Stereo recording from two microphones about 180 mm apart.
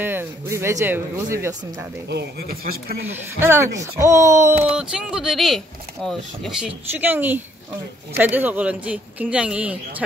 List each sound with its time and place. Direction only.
0.0 s speech: 10° right (ahead or behind)
2.0 s speech: 65° right (ahead or behind)
3.1 s speech: 10° right (ahead or behind); by 6.7 s 5° left (ahead or behind)
6.9 s speech: 10° right (ahead or behind)